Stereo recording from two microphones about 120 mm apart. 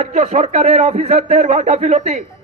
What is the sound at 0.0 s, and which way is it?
Speech, 65° right (ahead or behind).